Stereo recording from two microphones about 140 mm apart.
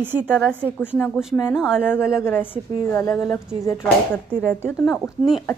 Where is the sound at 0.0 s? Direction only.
15° right (ahead or behind).